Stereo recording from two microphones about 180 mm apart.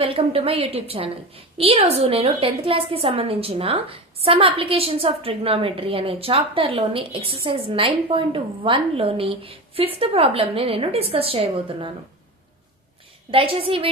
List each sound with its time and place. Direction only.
0.0 s a woman's voice: 30° right (ahead or behind)
13.3 s a woman's voice: 30° right (ahead or behind)